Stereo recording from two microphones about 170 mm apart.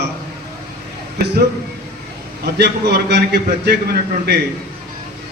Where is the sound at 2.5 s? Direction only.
70° right (ahead or behind).